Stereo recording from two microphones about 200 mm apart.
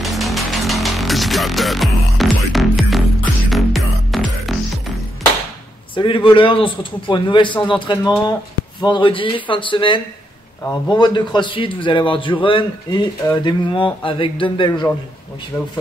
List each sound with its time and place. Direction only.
0.0 s music: centre (ahead or behind)
5.9 s a man's voice: 25° left (ahead or behind)
15.5 s a man's voice: 10° left (ahead or behind)